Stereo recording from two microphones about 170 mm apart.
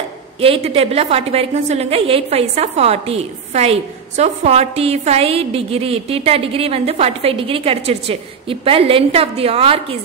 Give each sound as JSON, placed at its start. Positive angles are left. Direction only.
{"t": 0.4, "sound": "a woman's voice", "side_deg": -35}